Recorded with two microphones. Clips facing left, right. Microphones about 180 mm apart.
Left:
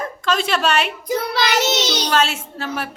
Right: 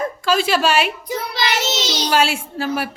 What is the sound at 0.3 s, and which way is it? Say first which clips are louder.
Speech: right 2 dB; 5° right (ahead or behind).